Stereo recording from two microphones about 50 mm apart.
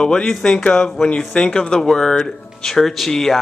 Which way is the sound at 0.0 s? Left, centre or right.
Centre.